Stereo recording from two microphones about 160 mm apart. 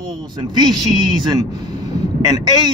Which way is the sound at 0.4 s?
25° right (ahead or behind).